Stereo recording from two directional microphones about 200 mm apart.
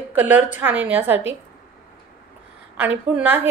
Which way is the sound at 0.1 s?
10° right (ahead or behind).